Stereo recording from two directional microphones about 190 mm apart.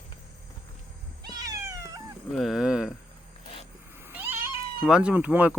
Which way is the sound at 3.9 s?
10° right (ahead or behind).